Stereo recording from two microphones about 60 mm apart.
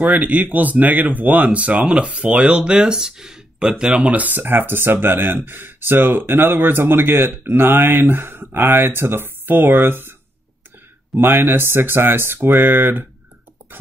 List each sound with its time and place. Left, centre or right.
0.0 s speech: right
11.1 s speech: right